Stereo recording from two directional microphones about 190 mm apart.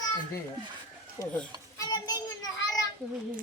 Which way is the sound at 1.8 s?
20° left (ahead or behind).